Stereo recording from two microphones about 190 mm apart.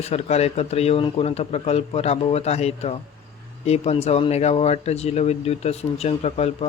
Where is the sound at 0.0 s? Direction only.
35° left (ahead or behind).